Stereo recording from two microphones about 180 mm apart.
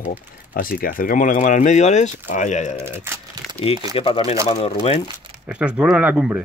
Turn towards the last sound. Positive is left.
turn(degrees=-10)  # may be behind; listen again after turning